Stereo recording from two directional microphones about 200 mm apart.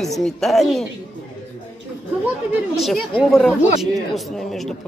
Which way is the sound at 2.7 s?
Centre (ahead or behind).